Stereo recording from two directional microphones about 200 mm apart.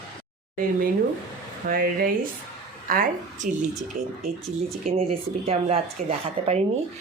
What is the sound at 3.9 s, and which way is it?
Speech, 35° right (ahead or behind).